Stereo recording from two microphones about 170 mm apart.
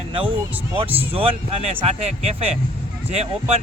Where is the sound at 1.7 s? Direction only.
35° right (ahead or behind).